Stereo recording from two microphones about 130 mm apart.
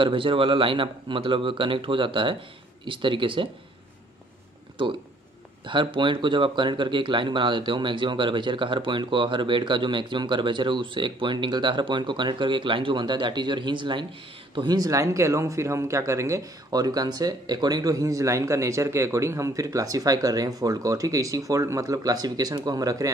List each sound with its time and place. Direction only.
0.0 s speech: 40° right (ahead or behind)
5.7 s speech: 40° right (ahead or behind)